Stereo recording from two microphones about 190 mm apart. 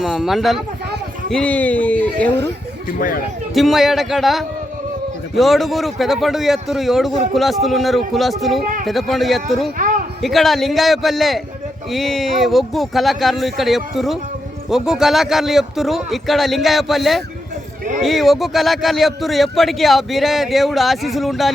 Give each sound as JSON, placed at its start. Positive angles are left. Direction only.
{"t": 0.0, "sound": "speech", "side_deg": 0}
{"t": 3.0, "sound": "speech", "side_deg": 45}
{"t": 3.5, "sound": "speech", "side_deg": 0}
{"t": 9.7, "sound": "a sound", "side_deg": -45}
{"t": 10.2, "sound": "speech", "side_deg": 0}